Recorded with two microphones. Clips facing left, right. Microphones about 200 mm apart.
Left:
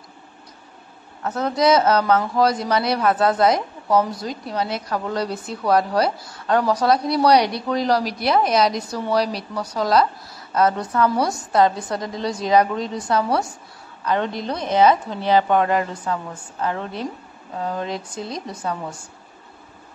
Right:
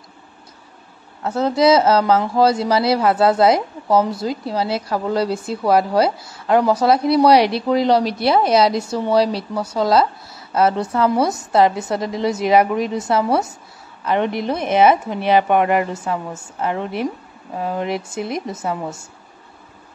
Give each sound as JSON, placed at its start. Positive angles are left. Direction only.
{"t": 1.2, "sound": "speech", "side_deg": -25}